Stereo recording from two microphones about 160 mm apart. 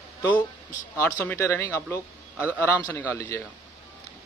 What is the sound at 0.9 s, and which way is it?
Speech, 15° left (ahead or behind).